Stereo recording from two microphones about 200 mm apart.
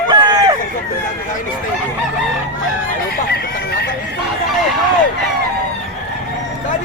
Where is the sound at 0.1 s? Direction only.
20° right (ahead or behind).